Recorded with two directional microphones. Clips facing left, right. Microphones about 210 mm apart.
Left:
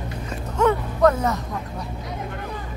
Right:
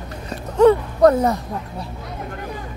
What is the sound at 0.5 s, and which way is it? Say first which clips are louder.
Speech: right 7 dB; 35° right (ahead or behind).